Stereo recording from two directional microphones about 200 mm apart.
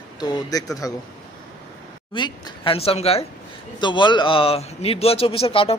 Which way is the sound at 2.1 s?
25° left (ahead or behind).